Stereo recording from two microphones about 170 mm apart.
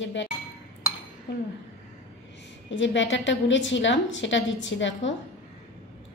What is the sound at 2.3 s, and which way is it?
A woman's voice, 90° left.